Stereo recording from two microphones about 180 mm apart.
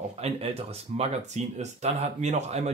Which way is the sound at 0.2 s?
35° right (ahead or behind).